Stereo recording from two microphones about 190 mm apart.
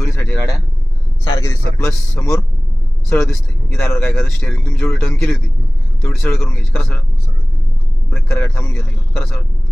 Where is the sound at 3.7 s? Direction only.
10° left (ahead or behind).